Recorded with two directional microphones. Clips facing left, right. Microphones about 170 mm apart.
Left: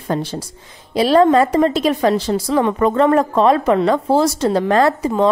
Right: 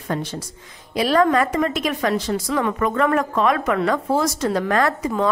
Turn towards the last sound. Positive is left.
turn(degrees=30)  # may be behind; listen again after turning